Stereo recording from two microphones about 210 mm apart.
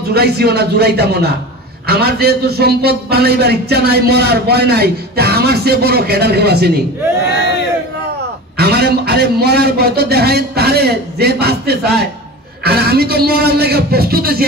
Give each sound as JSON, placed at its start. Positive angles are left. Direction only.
{"t": 0.1, "sound": "a man's voice", "side_deg": -50}
{"t": 8.5, "sound": "a man's voice", "side_deg": -50}